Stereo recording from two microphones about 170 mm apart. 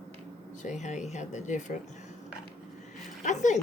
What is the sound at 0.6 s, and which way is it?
Speech, 45° left (ahead or behind).